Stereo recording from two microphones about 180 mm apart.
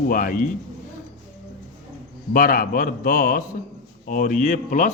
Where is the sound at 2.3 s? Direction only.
55° left (ahead or behind).